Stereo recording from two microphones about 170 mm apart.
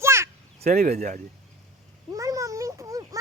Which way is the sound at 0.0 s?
15° right (ahead or behind).